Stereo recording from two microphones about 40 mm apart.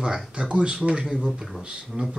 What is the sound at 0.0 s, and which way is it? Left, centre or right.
Speech, right.